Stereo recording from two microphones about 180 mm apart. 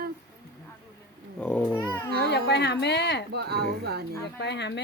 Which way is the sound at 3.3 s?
65° right (ahead or behind).